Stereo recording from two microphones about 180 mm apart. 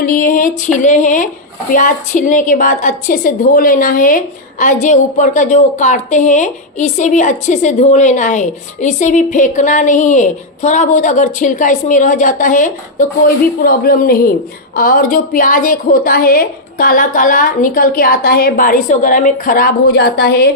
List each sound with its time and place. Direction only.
0.0 s a woman's voice: 50° left (ahead or behind)